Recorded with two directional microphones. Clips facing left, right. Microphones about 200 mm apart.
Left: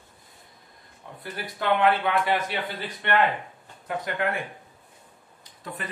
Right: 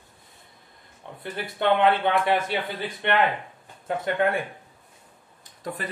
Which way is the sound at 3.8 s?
25° right (ahead or behind).